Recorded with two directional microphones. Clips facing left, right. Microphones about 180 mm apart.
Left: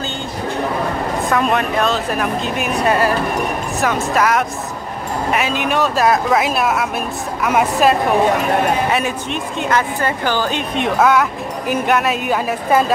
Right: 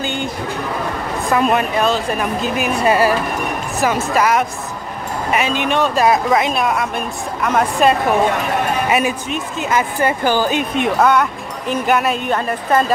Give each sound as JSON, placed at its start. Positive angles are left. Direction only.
{"t": 0.0, "sound": "a sound", "side_deg": -15}
{"t": 1.3, "sound": "a woman's voice", "side_deg": -5}
{"t": 11.0, "sound": "speech", "side_deg": 0}